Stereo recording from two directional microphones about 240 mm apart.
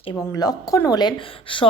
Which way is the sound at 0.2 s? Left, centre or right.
Centre.